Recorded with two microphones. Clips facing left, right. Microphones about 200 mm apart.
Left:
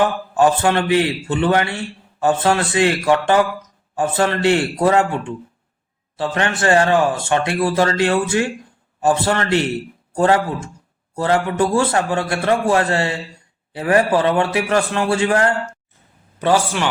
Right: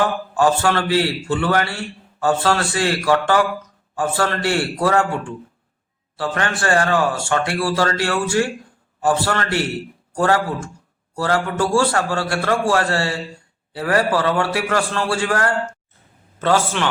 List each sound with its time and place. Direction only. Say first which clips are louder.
0.3 s a man's voice: left 2 dB; 20° left (ahead or behind)